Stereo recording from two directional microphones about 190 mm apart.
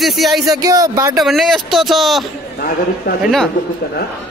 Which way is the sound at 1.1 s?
Centre (ahead or behind).